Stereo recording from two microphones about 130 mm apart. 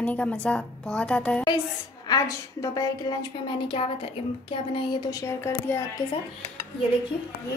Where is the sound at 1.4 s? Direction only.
30° left (ahead or behind).